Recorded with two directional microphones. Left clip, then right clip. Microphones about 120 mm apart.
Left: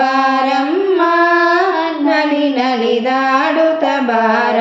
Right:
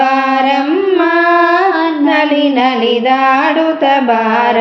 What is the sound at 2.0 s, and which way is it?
Mantra, 40° right (ahead or behind).